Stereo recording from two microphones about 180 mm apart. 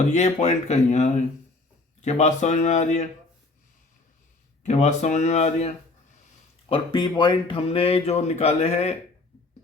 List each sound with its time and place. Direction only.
0.1 s speech: 40° left (ahead or behind)
4.6 s speech: 40° left (ahead or behind)
6.7 s speech: 25° left (ahead or behind)